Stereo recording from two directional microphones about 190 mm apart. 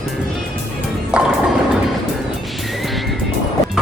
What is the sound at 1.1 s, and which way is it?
Music, 5° right (ahead or behind).